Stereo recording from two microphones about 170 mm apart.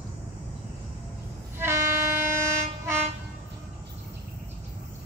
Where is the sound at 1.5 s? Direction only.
15° right (ahead or behind).